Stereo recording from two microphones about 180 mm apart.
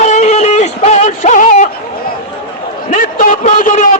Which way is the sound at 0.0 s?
40° left (ahead or behind).